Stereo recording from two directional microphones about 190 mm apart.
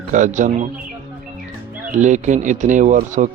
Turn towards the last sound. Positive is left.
turn(degrees=-40)  # may be behind; listen again after turning